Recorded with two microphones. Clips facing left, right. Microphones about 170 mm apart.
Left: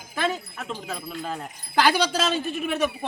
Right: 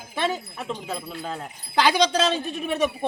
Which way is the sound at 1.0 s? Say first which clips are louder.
Even; 5° left (ahead or behind).